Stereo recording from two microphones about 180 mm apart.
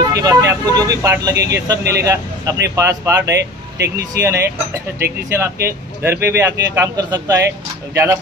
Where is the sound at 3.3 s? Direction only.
70° right (ahead or behind).